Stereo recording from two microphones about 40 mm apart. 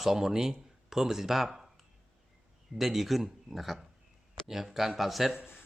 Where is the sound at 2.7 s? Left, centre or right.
Centre.